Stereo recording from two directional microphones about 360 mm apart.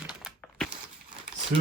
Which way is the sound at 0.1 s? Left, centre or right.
Centre.